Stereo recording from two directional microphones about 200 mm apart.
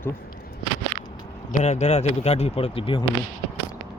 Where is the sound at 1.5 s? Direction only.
35° left (ahead or behind).